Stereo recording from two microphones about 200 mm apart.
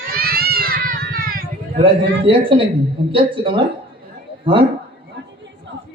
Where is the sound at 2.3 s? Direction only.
25° right (ahead or behind).